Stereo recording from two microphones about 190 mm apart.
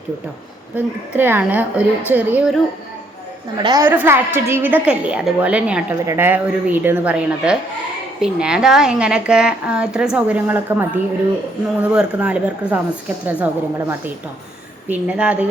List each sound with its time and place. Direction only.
0.8 s a woman's voice: 10° right (ahead or behind)
3.6 s a woman's voice: 20° right (ahead or behind)
3.8 s a woman's voice: 10° right (ahead or behind)